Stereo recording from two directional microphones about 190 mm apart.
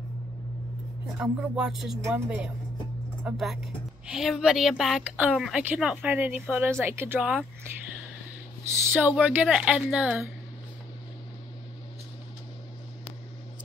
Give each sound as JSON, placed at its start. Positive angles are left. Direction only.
{"t": 1.2, "sound": "a woman's voice", "side_deg": -5}
{"t": 8.9, "sound": "a woman's voice", "side_deg": -10}